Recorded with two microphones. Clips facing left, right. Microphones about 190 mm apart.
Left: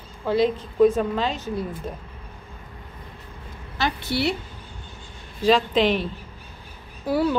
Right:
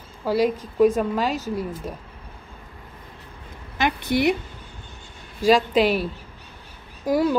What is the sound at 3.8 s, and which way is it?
Speech, 15° right (ahead or behind).